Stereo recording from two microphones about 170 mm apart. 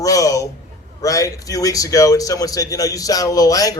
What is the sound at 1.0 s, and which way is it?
A man's voice, 20° left (ahead or behind).